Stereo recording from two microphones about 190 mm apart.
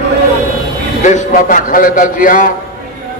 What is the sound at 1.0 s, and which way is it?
A man's voice, 40° left (ahead or behind).